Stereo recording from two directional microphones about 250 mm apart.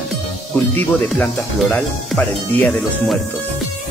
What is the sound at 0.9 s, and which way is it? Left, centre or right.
Speech, centre.